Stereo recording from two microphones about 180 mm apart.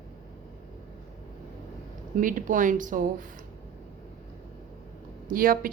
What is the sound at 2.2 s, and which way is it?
A woman's voice, 50° right (ahead or behind).